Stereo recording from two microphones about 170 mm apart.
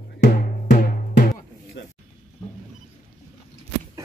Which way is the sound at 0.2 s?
55° left (ahead or behind).